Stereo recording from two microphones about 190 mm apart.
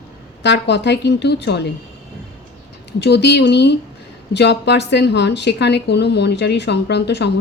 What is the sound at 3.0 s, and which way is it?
A woman's voice, 65° left (ahead or behind).